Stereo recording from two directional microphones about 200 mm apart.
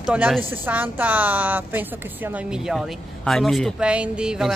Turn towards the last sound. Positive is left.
turn(degrees=-5)  # may be behind; listen again after turning